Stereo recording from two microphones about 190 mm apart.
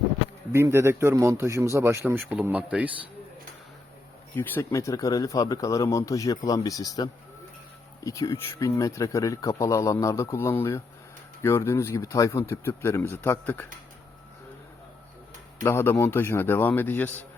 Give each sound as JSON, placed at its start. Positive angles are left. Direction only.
{"t": 0.5, "sound": "a man's voice", "side_deg": -15}
{"t": 4.4, "sound": "speech", "side_deg": 10}
{"t": 15.6, "sound": "speech", "side_deg": 10}